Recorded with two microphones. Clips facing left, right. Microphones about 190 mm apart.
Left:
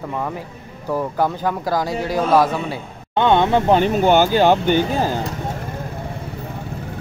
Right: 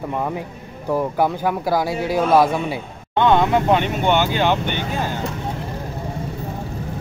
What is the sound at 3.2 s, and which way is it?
Speech, 30° left (ahead or behind).